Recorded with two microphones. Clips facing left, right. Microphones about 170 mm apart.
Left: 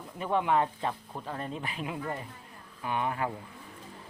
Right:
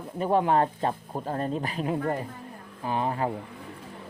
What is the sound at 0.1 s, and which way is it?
Speech, 40° right (ahead or behind).